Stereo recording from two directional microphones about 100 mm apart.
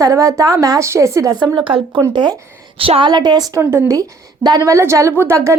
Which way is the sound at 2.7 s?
70° right (ahead or behind).